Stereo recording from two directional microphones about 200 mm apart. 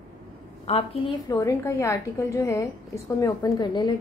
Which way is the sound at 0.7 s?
30° left (ahead or behind).